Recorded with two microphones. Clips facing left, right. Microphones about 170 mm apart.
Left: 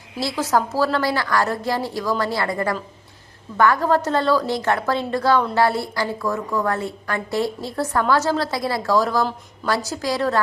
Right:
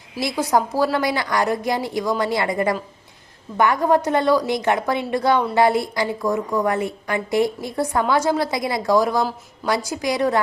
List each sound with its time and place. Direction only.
0.2 s a woman's voice: 15° right (ahead or behind)